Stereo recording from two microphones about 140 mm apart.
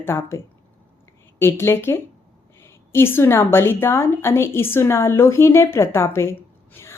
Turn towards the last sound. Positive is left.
turn(degrees=15)  # may be behind; listen again after turning